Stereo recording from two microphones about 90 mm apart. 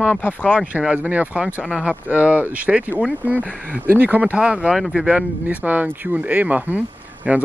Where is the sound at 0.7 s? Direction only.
15° right (ahead or behind).